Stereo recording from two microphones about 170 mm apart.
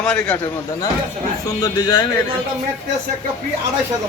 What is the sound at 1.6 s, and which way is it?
Speech, 25° left (ahead or behind).